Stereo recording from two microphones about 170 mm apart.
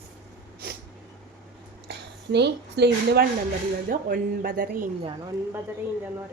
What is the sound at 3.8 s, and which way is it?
Speech, 55° right (ahead or behind).